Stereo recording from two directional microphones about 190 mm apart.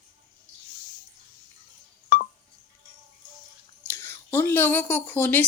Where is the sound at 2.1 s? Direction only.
50° left (ahead or behind).